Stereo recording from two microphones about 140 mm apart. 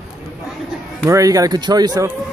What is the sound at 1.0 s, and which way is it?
Speech, 25° right (ahead or behind).